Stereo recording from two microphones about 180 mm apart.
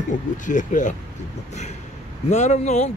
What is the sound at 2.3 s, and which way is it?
Speech, 40° left (ahead or behind).